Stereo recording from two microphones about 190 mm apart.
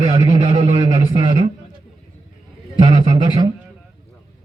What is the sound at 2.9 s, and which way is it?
Speech, 30° right (ahead or behind).